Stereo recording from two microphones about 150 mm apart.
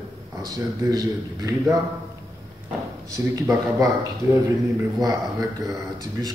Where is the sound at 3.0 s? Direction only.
25° right (ahead or behind).